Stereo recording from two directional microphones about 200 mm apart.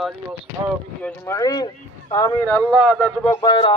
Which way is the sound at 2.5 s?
Centre (ahead or behind).